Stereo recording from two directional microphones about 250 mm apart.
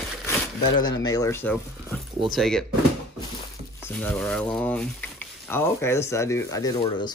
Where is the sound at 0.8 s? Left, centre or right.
Centre.